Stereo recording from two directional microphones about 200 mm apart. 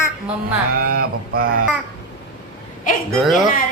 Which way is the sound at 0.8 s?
50° right (ahead or behind).